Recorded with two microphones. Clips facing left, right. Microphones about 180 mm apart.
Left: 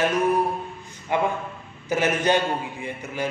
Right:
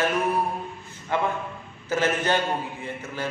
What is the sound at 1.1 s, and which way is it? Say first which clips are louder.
A man's voice: left 2 dB; 15° left (ahead or behind).